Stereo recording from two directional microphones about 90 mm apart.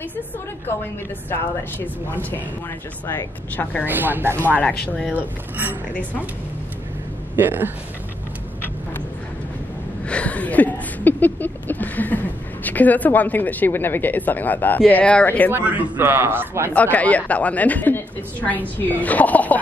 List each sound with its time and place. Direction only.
2.0 s a woman's voice: 20° left (ahead or behind)
3.8 s a man's voice: 20° right (ahead or behind)
4.4 s a woman's voice: 20° left (ahead or behind)
5.1 s a man's voice: 20° right (ahead or behind)
7.3 s a man's voice: 20° right (ahead or behind)
10.0 s a sound: 15° left (ahead or behind)
12.6 s a woman's voice: 20° left (ahead or behind)
15.5 s a man's voice: 20° right (ahead or behind)
16.7 s a woman's voice: 15° left (ahead or behind)